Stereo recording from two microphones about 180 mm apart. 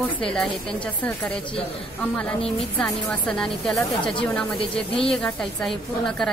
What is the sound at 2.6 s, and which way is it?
A woman's voice, 5° left (ahead or behind).